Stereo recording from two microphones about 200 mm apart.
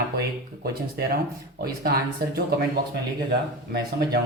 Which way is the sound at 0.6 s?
50° right (ahead or behind).